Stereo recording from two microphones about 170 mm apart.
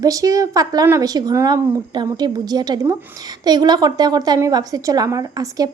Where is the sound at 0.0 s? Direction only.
20° right (ahead or behind).